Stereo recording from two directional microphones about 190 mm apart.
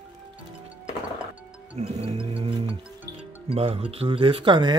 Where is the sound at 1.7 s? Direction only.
30° right (ahead or behind).